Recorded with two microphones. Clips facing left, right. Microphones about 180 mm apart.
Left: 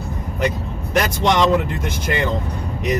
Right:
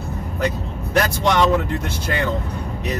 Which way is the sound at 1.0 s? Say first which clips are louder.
Left 1 dB; 20° left (ahead or behind).